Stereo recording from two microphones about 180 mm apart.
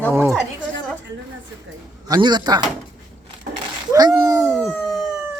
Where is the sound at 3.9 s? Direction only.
20° right (ahead or behind).